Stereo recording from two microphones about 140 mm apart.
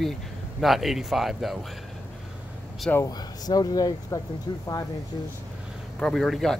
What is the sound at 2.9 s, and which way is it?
Speech, 25° left (ahead or behind).